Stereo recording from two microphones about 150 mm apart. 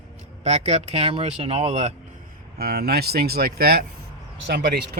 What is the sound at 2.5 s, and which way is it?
Speech, 90° right.